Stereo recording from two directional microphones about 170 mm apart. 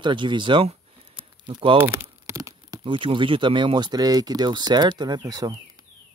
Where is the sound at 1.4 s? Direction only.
25° right (ahead or behind).